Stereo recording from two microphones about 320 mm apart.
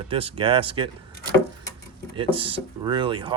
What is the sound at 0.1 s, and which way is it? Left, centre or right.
Speech, centre.